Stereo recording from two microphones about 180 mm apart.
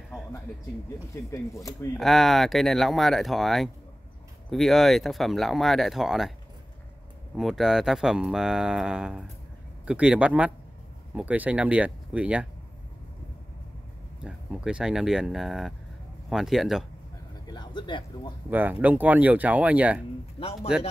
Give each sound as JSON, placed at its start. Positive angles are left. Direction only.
{"t": 1.3, "sound": "speech", "side_deg": 15}
{"t": 2.0, "sound": "speech", "side_deg": 0}
{"t": 7.3, "sound": "speech", "side_deg": 0}
{"t": 14.2, "sound": "speech", "side_deg": -5}
{"t": 17.5, "sound": "speech", "side_deg": 25}
{"t": 18.5, "sound": "speech", "side_deg": -10}
{"t": 20.4, "sound": "speech", "side_deg": 30}